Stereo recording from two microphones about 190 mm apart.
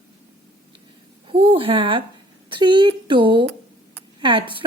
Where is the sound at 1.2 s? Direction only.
30° right (ahead or behind).